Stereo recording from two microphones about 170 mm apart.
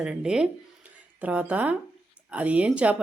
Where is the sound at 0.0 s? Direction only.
5° right (ahead or behind).